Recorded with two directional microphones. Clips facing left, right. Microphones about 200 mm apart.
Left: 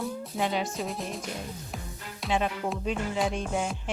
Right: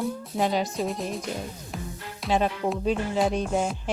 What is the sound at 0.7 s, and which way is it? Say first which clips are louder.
Music: right 5 dB; centre (ahead or behind).